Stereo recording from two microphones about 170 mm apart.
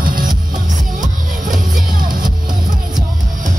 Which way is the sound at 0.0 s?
55° right (ahead or behind).